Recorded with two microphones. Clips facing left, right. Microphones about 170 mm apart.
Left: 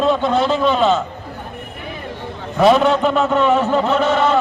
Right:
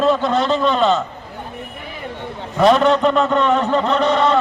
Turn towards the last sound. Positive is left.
turn(degrees=5)  # may be behind; listen again after turning